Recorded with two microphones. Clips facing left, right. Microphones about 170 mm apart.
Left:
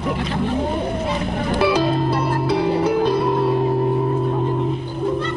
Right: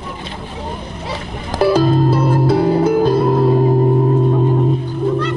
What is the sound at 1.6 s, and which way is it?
Music, 45° right (ahead or behind).